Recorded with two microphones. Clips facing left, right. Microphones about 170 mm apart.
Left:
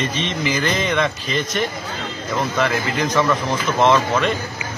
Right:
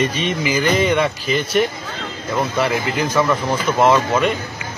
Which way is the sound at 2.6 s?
10° right (ahead or behind).